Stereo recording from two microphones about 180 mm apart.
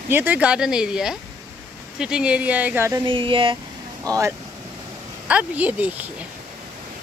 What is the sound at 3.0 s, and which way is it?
Speech, 30° right (ahead or behind).